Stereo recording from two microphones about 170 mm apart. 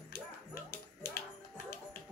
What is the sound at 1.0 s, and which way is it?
Music, 70° left (ahead or behind).